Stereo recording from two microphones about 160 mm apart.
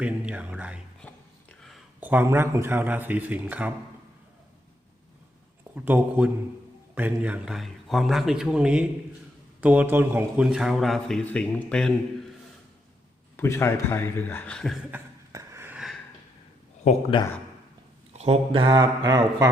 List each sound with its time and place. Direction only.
0.0 s speech: 10° right (ahead or behind)
1.0 s a sound: 5° left (ahead or behind)
2.0 s speech: 10° right (ahead or behind)
5.7 s a man's voice: 10° right (ahead or behind); by 11.9 s 5° left (ahead or behind)
13.3 s speech: 15° left (ahead or behind); by 15.0 s 5° right (ahead or behind)
15.3 s a sound: 20° right (ahead or behind)
18.2 s speech: 35° right (ahead or behind)